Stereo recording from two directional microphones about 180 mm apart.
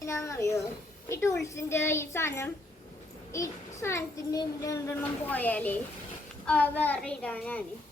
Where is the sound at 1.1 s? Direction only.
15° left (ahead or behind).